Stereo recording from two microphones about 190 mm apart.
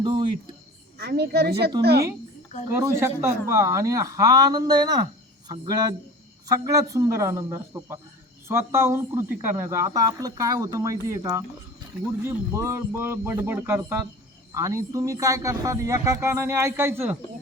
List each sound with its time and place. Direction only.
0.0 s speech: 25° right (ahead or behind)
0.9 s speech: 55° right (ahead or behind)
2.6 s speech: 15° right (ahead or behind)